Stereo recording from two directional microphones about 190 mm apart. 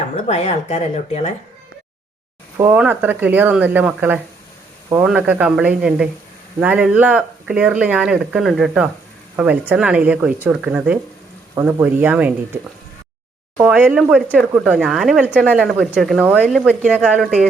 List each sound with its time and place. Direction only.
0.3 s speech: 35° left (ahead or behind)
2.6 s speech: 10° right (ahead or behind)
13.6 s speech: 10° right (ahead or behind)